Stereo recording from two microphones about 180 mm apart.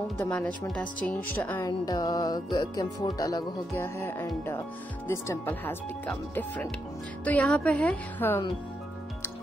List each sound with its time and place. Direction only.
0.2 s speech: 5° left (ahead or behind)
1.7 s music: 20° left (ahead or behind)
5.0 s speech: 15° left (ahead or behind)